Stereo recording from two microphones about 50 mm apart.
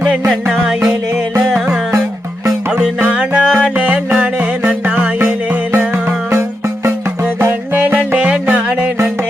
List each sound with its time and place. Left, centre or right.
0.4 s music: centre
3.1 s music: right
7.7 s music: right